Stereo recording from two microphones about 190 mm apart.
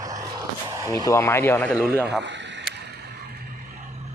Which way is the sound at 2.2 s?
70° right (ahead or behind).